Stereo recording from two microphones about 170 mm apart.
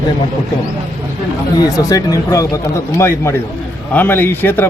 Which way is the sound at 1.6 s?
20° left (ahead or behind).